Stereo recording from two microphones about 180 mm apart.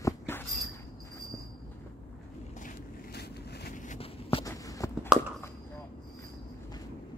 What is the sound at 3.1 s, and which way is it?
Vehicle, 65° left (ahead or behind).